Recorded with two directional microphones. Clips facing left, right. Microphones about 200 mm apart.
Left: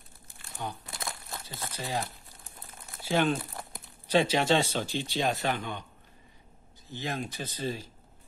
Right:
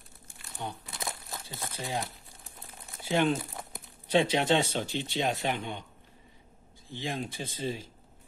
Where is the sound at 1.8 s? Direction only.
5° left (ahead or behind).